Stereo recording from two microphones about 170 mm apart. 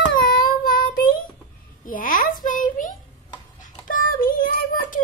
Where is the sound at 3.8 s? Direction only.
55° left (ahead or behind).